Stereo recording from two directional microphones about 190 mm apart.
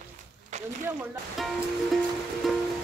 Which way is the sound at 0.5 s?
40° right (ahead or behind).